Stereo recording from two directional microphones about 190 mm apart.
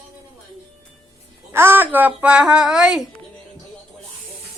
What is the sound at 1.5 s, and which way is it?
A woman's voice, 10° right (ahead or behind).